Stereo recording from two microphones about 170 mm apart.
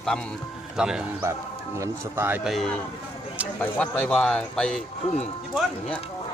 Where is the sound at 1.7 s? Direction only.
15° right (ahead or behind).